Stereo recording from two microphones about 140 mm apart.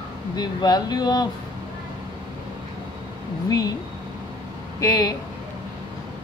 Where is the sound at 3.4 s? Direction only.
25° left (ahead or behind).